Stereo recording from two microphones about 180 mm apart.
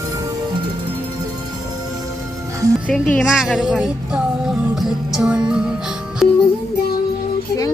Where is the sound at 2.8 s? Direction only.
5° left (ahead or behind).